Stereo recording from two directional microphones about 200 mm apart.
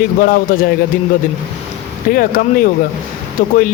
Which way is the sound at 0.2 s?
45° left (ahead or behind).